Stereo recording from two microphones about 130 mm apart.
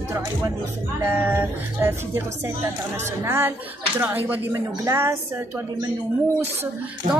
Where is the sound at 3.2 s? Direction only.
20° right (ahead or behind).